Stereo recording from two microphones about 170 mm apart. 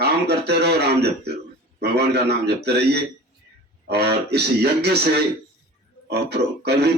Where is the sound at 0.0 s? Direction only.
75° right (ahead or behind).